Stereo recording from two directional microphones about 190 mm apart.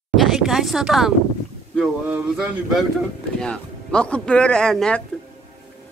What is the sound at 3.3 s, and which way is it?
Speech, 5° left (ahead or behind).